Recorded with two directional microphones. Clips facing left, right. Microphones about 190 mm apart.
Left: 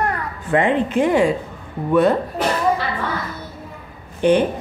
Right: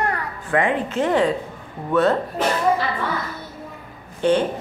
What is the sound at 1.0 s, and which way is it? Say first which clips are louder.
Speech: left 2 dB; 10° left (ahead or behind).